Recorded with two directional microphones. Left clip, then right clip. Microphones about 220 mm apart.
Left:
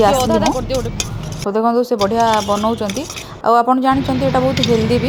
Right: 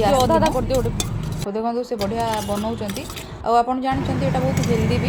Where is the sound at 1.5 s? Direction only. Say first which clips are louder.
Left 9 dB; 30° left (ahead or behind).